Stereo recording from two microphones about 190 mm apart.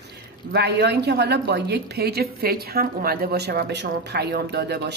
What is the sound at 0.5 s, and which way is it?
A woman's voice, 60° right (ahead or behind).